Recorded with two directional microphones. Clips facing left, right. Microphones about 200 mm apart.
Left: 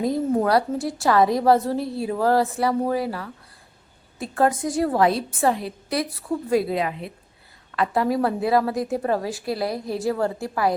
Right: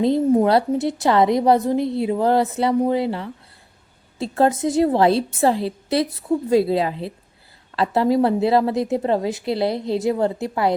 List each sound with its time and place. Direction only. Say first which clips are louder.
0.0 s a woman's voice: right 5 dB; 25° right (ahead or behind)